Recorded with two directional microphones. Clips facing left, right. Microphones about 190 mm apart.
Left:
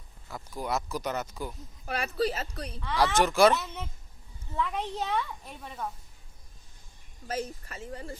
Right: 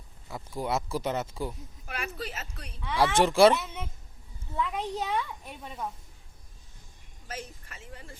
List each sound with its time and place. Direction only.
0.3 s speech: 25° right (ahead or behind)
1.9 s speech: 35° left (ahead or behind)
2.8 s a child's voice: 10° right (ahead or behind)
3.2 s speech: 30° right (ahead or behind)
4.5 s a child's voice: 10° right (ahead or behind)
7.3 s speech: 40° left (ahead or behind)